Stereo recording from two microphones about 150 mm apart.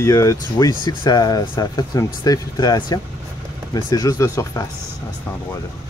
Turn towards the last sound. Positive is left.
turn(degrees=20)  # may be behind; listen again after turning